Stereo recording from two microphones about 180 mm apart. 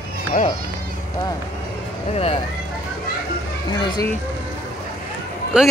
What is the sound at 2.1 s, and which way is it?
Speech, 30° left (ahead or behind).